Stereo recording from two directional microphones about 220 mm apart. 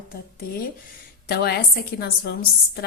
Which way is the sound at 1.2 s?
45° left (ahead or behind).